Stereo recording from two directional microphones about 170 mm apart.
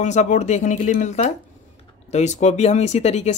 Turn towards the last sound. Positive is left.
turn(degrees=40)  # may be behind; listen again after turning